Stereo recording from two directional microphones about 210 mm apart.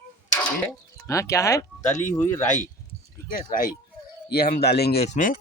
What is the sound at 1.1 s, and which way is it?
Speech, 15° left (ahead or behind).